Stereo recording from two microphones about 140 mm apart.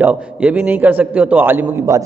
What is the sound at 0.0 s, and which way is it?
A man's voice, 10° right (ahead or behind).